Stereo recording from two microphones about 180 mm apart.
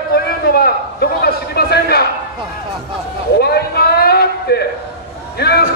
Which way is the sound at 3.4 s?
60° left (ahead or behind).